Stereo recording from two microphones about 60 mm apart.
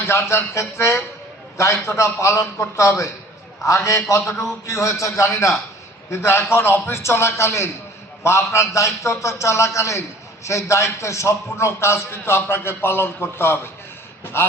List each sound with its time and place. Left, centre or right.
0.1 s a man's voice: left
6.1 s a man's voice: left